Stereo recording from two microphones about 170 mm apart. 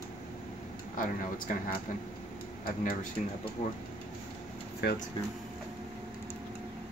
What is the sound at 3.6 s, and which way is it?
Speech, 45° left (ahead or behind).